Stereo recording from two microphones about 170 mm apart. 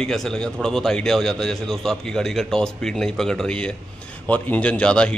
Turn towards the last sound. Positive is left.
turn(degrees=5)  # may be behind; listen again after turning